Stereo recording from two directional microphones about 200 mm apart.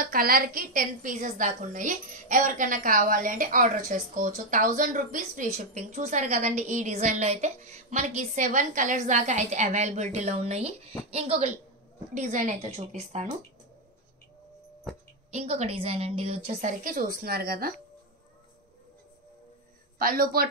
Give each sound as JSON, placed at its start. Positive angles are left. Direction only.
{"t": 0.0, "sound": "a woman's voice", "side_deg": -45}
{"t": 15.3, "sound": "a woman's voice", "side_deg": -35}
{"t": 16.8, "sound": "a woman's voice", "side_deg": -45}
{"t": 20.0, "sound": "a woman's voice", "side_deg": -50}